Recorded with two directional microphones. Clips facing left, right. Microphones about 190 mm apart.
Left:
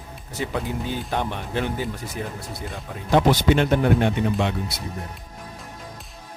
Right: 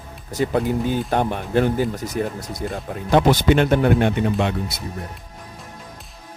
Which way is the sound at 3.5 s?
55° right (ahead or behind).